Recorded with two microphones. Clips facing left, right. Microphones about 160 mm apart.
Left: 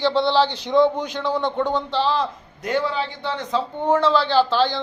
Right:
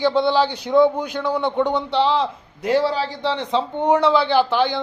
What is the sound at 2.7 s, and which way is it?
A man's voice, 35° right (ahead or behind).